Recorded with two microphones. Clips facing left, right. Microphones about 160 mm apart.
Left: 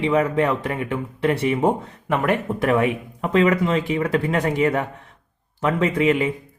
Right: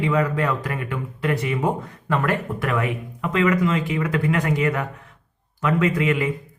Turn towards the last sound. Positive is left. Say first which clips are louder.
# left 2 dB
turn(degrees=25)  # may be behind; listen again after turning